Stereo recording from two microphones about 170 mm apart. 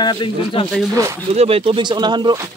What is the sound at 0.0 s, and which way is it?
Speech, 25° left (ahead or behind).